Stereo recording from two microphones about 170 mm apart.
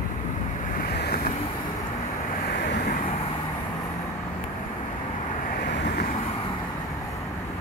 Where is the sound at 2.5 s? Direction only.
75° left (ahead or behind).